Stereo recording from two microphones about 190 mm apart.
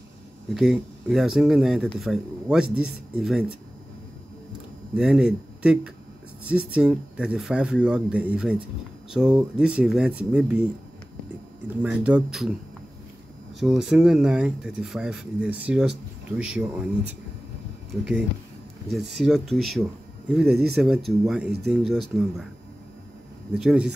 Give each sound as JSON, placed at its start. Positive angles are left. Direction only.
{"t": 0.6, "sound": "speech", "side_deg": -5}
{"t": 4.9, "sound": "speech", "side_deg": -5}
{"t": 11.8, "sound": "speech", "side_deg": -5}
{"t": 13.6, "sound": "speech", "side_deg": 0}
{"t": 18.9, "sound": "speech", "side_deg": 0}
{"t": 23.5, "sound": "speech", "side_deg": -5}